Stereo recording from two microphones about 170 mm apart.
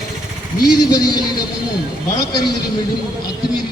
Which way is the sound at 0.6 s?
25° left (ahead or behind).